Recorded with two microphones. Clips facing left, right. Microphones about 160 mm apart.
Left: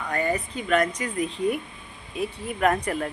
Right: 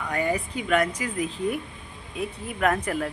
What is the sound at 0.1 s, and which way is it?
Speech, 10° right (ahead or behind).